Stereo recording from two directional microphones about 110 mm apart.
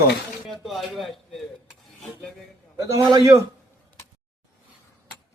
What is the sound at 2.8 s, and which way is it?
Speech, 30° right (ahead or behind).